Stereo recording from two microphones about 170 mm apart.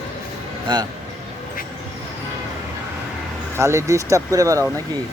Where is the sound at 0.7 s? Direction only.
25° right (ahead or behind).